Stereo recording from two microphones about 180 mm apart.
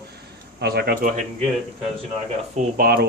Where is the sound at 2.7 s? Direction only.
60° right (ahead or behind).